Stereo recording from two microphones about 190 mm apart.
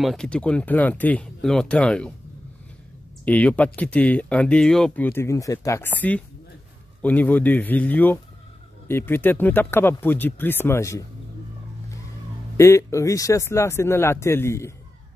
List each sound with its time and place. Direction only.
0.0 s speech: centre (ahead or behind)
3.3 s speech: 10° left (ahead or behind)
12.5 s speech: 15° left (ahead or behind)